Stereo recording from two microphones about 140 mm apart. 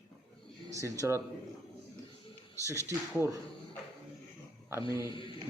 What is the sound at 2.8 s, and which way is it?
Speech, 20° right (ahead or behind).